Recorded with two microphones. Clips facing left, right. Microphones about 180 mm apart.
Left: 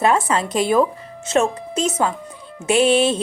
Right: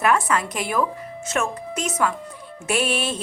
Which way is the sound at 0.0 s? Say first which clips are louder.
Left 3 dB; 25° left (ahead or behind).